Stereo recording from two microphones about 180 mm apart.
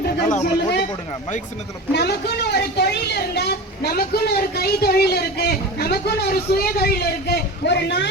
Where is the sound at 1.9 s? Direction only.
65° left (ahead or behind).